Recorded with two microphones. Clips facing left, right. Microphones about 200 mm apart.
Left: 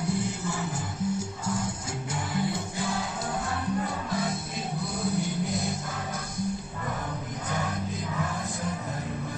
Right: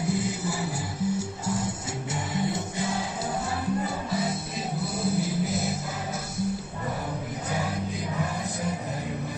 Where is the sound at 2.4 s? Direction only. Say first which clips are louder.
Right 1 dB; centre (ahead or behind).